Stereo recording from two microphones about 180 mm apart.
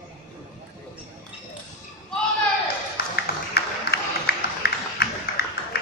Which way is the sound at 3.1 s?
65° left (ahead or behind).